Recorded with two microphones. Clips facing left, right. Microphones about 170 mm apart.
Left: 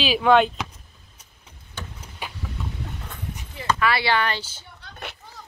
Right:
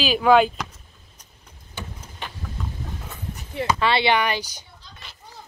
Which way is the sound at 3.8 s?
25° right (ahead or behind).